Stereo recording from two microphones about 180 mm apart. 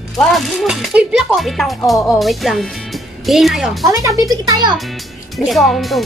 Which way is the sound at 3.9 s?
20° right (ahead or behind).